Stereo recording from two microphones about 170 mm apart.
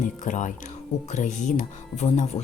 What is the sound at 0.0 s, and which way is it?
Speech, 50° left (ahead or behind).